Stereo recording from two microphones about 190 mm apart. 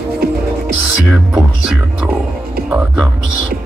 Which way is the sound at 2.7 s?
5° right (ahead or behind).